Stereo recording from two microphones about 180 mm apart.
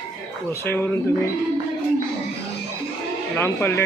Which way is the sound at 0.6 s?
10° left (ahead or behind).